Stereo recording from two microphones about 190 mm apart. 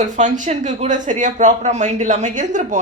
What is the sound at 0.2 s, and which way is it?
Speech, 40° right (ahead or behind).